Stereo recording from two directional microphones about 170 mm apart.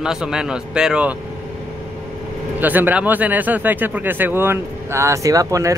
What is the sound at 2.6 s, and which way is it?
Speech, 10° right (ahead or behind).